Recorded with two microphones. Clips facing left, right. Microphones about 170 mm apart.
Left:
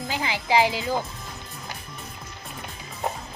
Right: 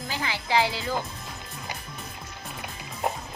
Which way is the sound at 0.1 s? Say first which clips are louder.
Left 3 dB; 15° left (ahead or behind).